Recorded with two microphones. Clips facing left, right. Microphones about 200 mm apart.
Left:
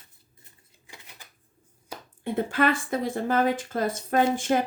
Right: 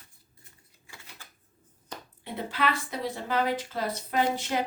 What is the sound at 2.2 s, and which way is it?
Speech, 50° left (ahead or behind).